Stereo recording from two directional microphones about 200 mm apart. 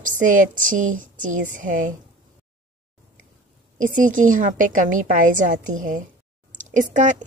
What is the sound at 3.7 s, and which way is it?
A woman's voice, 40° right (ahead or behind).